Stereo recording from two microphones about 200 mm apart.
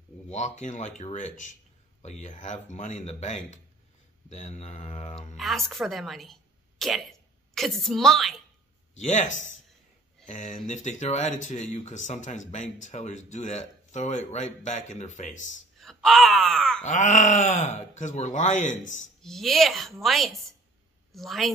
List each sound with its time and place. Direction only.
0.3 s speech: 35° left (ahead or behind)
5.4 s a woman's voice: centre (ahead or behind)
9.0 s speech: 35° left (ahead or behind)
15.8 s wail: centre (ahead or behind)
16.8 s speech: 35° left (ahead or behind)
19.2 s a woman's voice: centre (ahead or behind)